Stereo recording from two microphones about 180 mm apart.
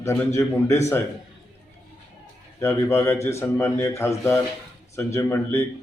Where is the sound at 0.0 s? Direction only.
15° left (ahead or behind).